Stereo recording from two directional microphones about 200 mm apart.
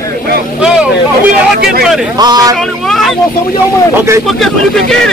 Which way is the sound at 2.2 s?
20° right (ahead or behind).